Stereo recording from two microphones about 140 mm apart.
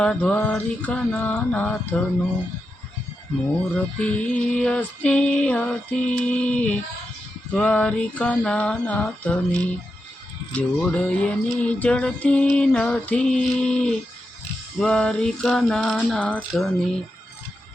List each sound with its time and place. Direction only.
0.0 s music: 5° left (ahead or behind)
3.9 s music: 10° left (ahead or behind)